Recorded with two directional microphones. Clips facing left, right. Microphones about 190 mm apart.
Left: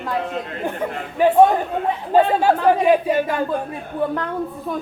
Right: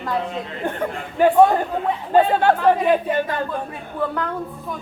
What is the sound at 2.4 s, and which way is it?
Speech, 5° left (ahead or behind).